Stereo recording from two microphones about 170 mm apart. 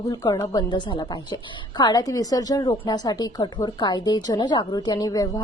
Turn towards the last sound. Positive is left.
turn(degrees=20)  # may be behind; listen again after turning